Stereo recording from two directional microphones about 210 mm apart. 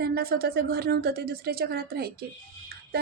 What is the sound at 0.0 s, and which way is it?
A woman's voice, 50° right (ahead or behind).